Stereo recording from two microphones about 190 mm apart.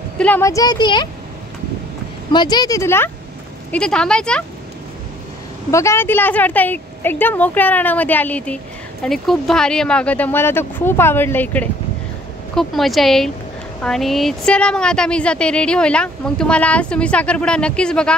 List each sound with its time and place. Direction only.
0.2 s a woman's voice: 10° left (ahead or behind)
2.3 s a woman's voice: 20° left (ahead or behind); by 4.5 s 5° left (ahead or behind)
5.7 s a woman's voice: 15° left (ahead or behind)